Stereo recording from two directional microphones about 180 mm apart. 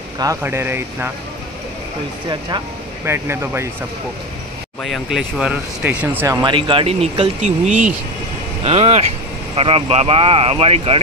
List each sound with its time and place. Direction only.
0.2 s speech: 15° right (ahead or behind)
3.1 s speech: 15° right (ahead or behind)
4.8 s speech: centre (ahead or behind)
6.4 s speech: 30° right (ahead or behind)